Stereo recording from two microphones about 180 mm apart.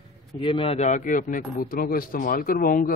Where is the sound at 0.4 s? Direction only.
30° left (ahead or behind).